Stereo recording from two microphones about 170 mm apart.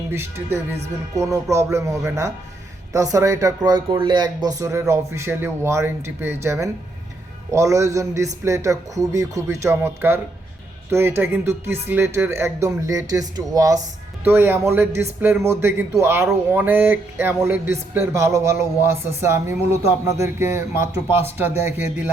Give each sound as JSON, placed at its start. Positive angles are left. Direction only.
{"t": 0.1, "sound": "speech", "side_deg": -15}